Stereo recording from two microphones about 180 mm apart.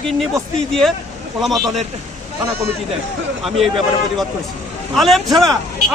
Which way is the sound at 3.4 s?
Centre (ahead or behind).